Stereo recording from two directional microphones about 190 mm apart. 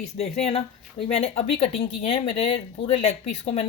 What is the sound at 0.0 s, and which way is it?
Speech, 35° left (ahead or behind).